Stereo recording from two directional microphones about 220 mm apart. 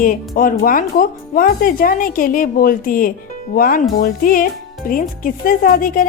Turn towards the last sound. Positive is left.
turn(degrees=40)  # may be behind; listen again after turning